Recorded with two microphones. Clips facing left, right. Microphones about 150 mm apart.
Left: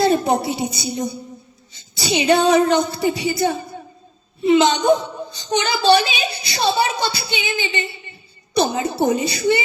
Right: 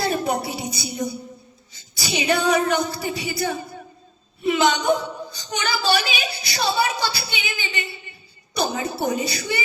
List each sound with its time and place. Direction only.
0.0 s a woman's voice: 25° left (ahead or behind)